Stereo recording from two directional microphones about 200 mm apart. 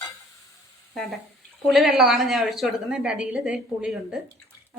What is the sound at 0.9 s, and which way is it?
A woman's voice, centre (ahead or behind).